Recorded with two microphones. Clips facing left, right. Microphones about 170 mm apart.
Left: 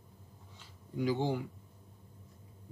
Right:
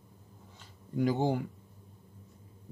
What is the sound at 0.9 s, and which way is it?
Speech, 50° right (ahead or behind).